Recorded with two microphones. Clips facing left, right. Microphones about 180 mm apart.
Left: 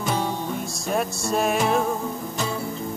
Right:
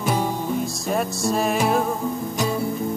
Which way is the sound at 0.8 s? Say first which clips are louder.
Even; centre (ahead or behind).